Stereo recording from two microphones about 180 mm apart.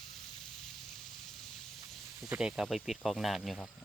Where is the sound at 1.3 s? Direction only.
Centre (ahead or behind).